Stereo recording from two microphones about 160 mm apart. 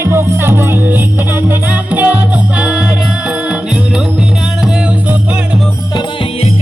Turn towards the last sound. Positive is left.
turn(degrees=35)  # may be behind; listen again after turning